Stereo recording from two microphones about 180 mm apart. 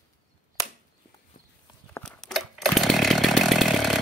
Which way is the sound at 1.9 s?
5° left (ahead or behind).